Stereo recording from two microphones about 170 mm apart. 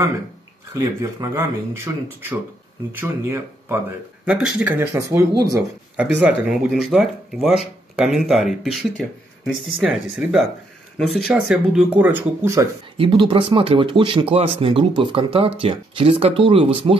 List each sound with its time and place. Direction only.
0.7 s speech: 20° right (ahead or behind)
5.9 s speech: 5° right (ahead or behind)
12.9 s speech: 30° right (ahead or behind)